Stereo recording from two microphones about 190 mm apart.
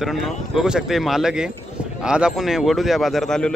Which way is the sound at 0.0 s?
Centre (ahead or behind).